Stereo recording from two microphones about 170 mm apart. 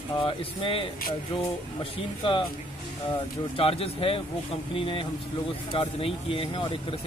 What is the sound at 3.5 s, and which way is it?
Speech, 35° left (ahead or behind).